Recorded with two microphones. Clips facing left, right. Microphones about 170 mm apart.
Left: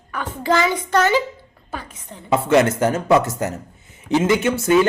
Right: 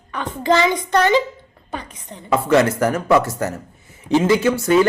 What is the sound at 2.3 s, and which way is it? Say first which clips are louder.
Speech: even; 20° left (ahead or behind).